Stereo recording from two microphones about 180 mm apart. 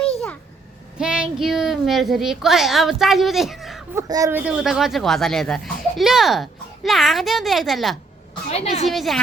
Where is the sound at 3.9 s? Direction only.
20° right (ahead or behind).